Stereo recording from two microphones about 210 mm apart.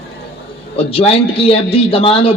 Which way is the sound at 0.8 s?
25° left (ahead or behind).